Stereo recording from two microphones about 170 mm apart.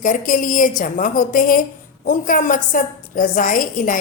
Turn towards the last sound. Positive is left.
turn(degrees=55)  # may be behind; listen again after turning